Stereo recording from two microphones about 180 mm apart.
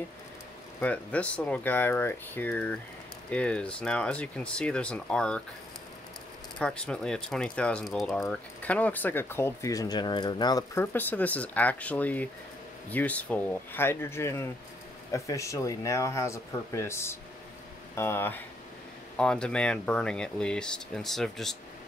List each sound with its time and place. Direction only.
0.7 s speech: 10° left (ahead or behind)
6.6 s speech: 5° left (ahead or behind)